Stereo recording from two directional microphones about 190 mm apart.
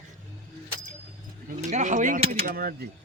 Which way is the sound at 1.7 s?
40° right (ahead or behind).